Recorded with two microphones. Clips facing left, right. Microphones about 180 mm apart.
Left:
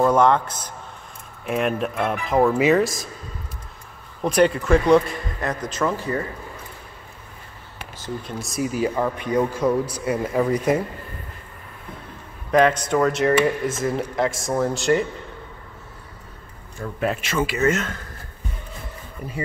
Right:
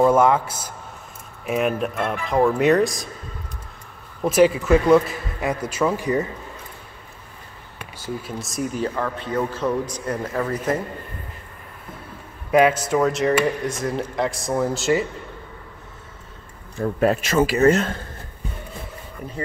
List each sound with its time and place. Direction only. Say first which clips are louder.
0.0 s a man's voice: right 1 dB; 5° right (ahead or behind)
4.2 s speech: right 2 dB; 5° right (ahead or behind)
8.0 s speech: right 1 dB; 5° right (ahead or behind); by 10.8 s 10° left (ahead or behind)
12.4 s speech: right 1 dB; 10° right (ahead or behind)
16.7 s speech: right 6 dB; 40° right (ahead or behind)